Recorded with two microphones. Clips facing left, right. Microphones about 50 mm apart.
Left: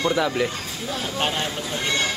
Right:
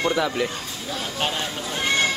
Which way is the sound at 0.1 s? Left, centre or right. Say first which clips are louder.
Left 1 dB; centre.